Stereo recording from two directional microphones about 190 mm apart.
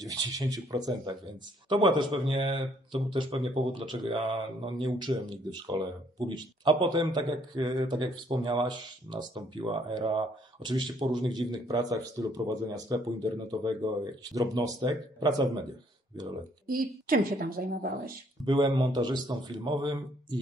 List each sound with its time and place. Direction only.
0.0 s speech: 20° right (ahead or behind)
16.6 s a woman's voice: 50° right (ahead or behind)
18.4 s speech: 25° right (ahead or behind)